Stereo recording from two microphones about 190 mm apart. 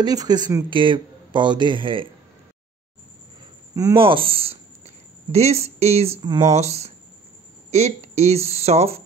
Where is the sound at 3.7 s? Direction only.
20° right (ahead or behind).